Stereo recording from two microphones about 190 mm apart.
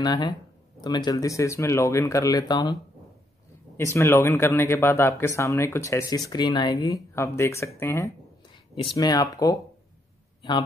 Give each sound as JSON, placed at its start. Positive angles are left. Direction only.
{"t": 0.0, "sound": "speech", "side_deg": 20}